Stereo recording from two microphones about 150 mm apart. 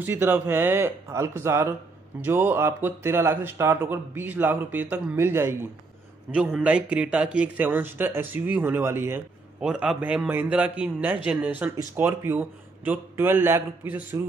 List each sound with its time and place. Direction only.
0.0 s speech: 15° right (ahead or behind)
9.6 s speech: 5° right (ahead or behind)